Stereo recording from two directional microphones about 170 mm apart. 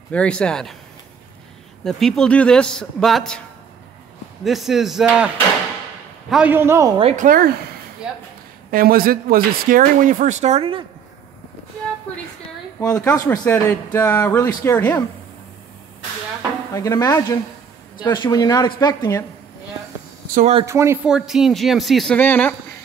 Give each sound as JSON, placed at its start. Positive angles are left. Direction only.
{"t": 0.1, "sound": "a man's voice", "side_deg": 5}
{"t": 1.9, "sound": "a man's voice", "side_deg": 0}
{"t": 4.5, "sound": "a man's voice", "side_deg": 0}
{"t": 6.3, "sound": "a man's voice", "side_deg": -10}
{"t": 7.0, "sound": "speech", "side_deg": -35}
{"t": 7.2, "sound": "speech", "side_deg": -60}
{"t": 8.7, "sound": "speech", "side_deg": -60}
{"t": 12.9, "sound": "speech", "side_deg": 20}
{"t": 16.7, "sound": "speech", "side_deg": 20}
{"t": 20.3, "sound": "speech", "side_deg": -40}
{"t": 20.6, "sound": "a man's voice", "side_deg": -15}
{"t": 21.1, "sound": "a man's voice", "side_deg": -5}